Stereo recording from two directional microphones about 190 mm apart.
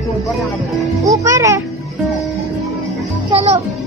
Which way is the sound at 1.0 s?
15° right (ahead or behind).